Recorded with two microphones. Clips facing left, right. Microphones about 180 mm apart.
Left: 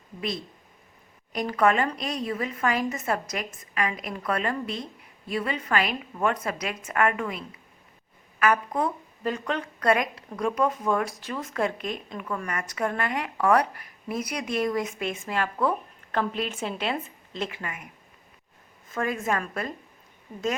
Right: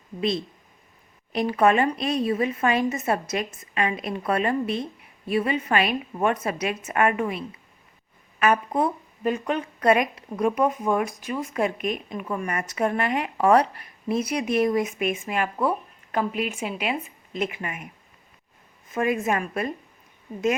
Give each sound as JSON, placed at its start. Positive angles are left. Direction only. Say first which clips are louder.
{"t": 1.3, "sound": "a woman's voice", "louder": "right 3 dB", "side_deg": -25}
{"t": 18.9, "sound": "a woman's voice", "louder": "right 4 dB", "side_deg": -20}